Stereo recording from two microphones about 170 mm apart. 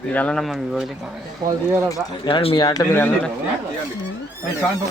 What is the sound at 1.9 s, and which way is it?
Speech, 30° left (ahead or behind).